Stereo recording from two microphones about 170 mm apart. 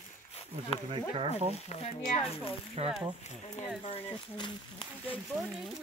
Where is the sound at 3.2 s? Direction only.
40° left (ahead or behind).